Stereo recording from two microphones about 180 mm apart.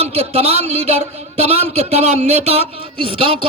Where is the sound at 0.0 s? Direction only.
35° right (ahead or behind).